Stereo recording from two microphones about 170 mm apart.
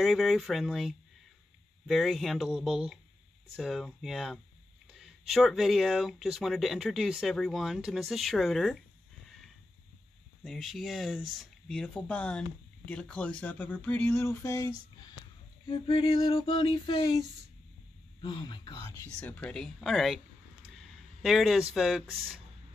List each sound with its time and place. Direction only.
0.0 s speech: centre (ahead or behind)
10.4 s speech: centre (ahead or behind)
13.7 s a sound: 10° left (ahead or behind)
15.7 s a sound: 30° left (ahead or behind)
18.2 s speech: 30° left (ahead or behind)
19.1 s speech: 5° left (ahead or behind)
21.2 s speech: centre (ahead or behind)